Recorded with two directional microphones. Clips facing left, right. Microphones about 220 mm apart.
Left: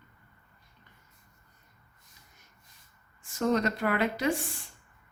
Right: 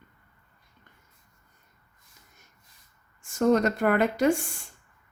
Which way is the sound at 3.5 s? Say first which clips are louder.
Right 5 dB; 50° right (ahead or behind).